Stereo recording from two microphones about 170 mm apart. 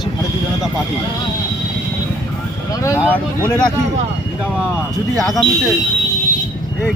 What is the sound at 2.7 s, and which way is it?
Vehicle, 15° left (ahead or behind).